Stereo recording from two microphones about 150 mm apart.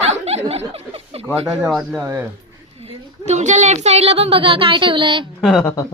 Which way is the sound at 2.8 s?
45° right (ahead or behind).